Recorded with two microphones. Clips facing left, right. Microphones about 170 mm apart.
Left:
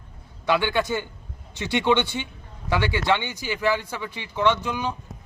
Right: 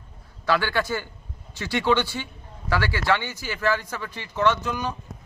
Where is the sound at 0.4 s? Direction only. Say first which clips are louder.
Left 1 dB; 20° left (ahead or behind).